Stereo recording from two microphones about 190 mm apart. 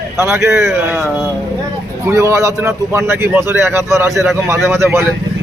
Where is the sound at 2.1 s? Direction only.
15° right (ahead or behind).